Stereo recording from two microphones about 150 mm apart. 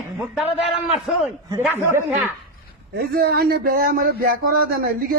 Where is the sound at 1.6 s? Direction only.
15° right (ahead or behind).